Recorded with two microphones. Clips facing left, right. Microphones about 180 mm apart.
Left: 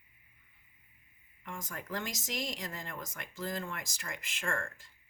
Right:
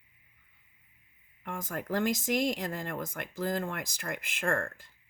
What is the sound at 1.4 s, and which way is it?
Speech, 55° right (ahead or behind).